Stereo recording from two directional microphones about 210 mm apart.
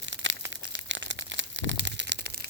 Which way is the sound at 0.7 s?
60° right (ahead or behind).